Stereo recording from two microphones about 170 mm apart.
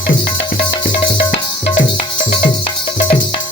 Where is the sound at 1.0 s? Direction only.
30° left (ahead or behind).